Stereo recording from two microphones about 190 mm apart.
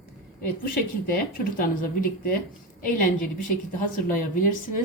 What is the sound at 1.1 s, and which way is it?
Speech, 50° left (ahead or behind).